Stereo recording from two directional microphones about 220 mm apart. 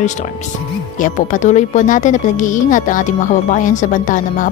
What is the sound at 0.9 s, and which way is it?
A woman's voice, 35° left (ahead or behind).